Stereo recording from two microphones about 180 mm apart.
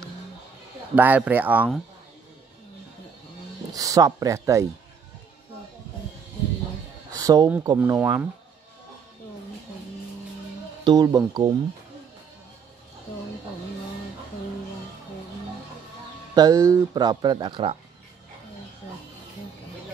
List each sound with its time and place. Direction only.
0.9 s speech: 10° right (ahead or behind)
3.7 s speech: 20° right (ahead or behind)
7.1 s a sound: 20° right (ahead or behind)
7.6 s speech: 20° right (ahead or behind)
10.8 s speech: 20° right (ahead or behind)
16.3 s speech: 15° right (ahead or behind)